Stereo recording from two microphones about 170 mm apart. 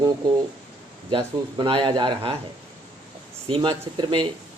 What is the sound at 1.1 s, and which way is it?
Speech, 30° right (ahead or behind).